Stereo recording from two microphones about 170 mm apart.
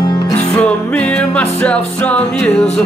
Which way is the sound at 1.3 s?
5° left (ahead or behind).